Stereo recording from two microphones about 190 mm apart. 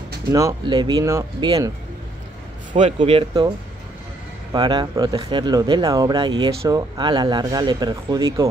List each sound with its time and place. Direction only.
0.3 s speech: 20° right (ahead or behind)
3.0 s speech: 25° right (ahead or behind)